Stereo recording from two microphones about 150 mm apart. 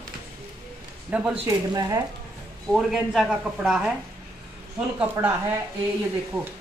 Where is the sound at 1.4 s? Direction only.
25° right (ahead or behind).